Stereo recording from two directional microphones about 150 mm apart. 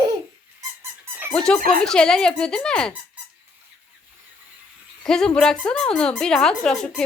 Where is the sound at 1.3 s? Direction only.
5° left (ahead or behind).